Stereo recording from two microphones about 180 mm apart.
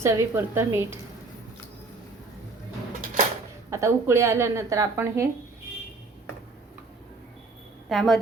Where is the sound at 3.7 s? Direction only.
15° right (ahead or behind).